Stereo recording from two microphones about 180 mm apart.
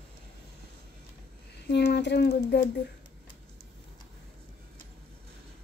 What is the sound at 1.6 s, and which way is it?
Speech, 65° left (ahead or behind).